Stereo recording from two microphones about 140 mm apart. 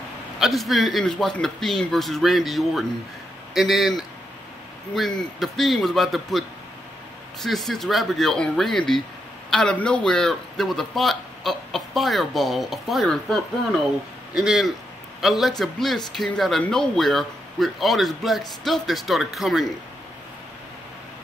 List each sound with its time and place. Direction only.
0.4 s a man's voice: centre (ahead or behind)
7.4 s a man's voice: centre (ahead or behind)